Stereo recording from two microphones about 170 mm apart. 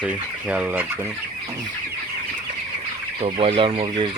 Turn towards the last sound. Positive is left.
turn(degrees=-30)  # may be behind; listen again after turning